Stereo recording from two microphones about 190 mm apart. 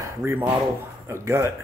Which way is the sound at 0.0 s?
15° right (ahead or behind).